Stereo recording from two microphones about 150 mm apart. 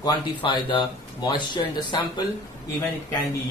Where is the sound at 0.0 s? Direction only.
30° left (ahead or behind).